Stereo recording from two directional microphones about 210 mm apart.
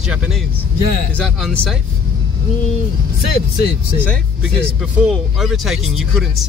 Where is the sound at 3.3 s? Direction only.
45° left (ahead or behind).